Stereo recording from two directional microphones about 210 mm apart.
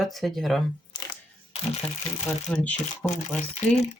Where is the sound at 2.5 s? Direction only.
5° left (ahead or behind).